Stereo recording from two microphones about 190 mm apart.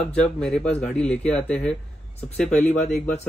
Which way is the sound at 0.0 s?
5° left (ahead or behind).